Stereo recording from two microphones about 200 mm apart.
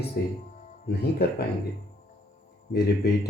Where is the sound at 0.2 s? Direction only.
50° left (ahead or behind).